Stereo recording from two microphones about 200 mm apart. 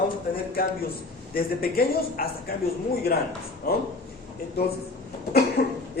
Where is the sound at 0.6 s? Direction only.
50° left (ahead or behind).